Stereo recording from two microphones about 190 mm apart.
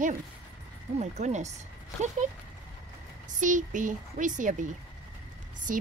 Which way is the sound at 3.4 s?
40° right (ahead or behind).